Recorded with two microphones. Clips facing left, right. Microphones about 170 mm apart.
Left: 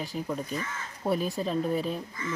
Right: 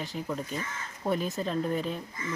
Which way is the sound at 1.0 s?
10° left (ahead or behind).